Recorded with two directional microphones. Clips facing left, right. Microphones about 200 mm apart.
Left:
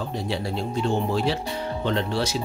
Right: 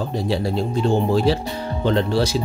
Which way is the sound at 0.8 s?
35° right (ahead or behind).